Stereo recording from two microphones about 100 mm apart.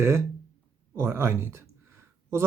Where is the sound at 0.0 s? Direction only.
25° right (ahead or behind).